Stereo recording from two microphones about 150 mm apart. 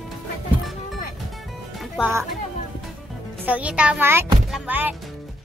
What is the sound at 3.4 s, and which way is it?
A child's voice, 10° right (ahead or behind).